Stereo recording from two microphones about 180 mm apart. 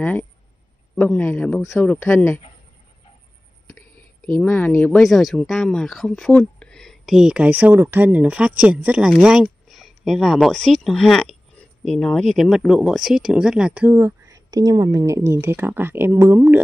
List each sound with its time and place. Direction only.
0.0 s speech: 10° left (ahead or behind)
4.5 s speech: 10° left (ahead or behind); by 16.5 s 15° right (ahead or behind)